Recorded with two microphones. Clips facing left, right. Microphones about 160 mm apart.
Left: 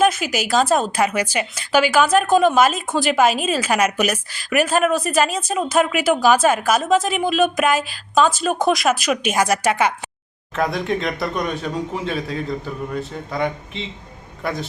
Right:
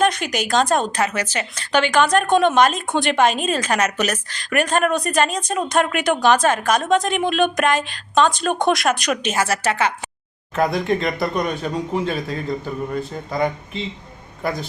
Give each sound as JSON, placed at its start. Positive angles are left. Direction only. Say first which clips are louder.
{"t": 0.0, "sound": "speech", "louder": "left 1 dB", "side_deg": 5}
{"t": 10.5, "sound": "speech", "louder": "right 2 dB", "side_deg": 0}